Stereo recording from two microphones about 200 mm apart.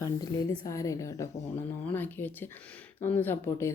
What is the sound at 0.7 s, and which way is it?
Speech, 15° left (ahead or behind).